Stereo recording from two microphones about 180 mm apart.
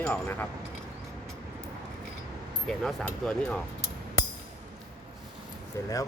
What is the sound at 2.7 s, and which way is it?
Speech, 5° left (ahead or behind).